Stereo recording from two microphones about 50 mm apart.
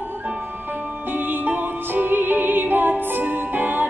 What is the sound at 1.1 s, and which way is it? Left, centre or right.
Music, right.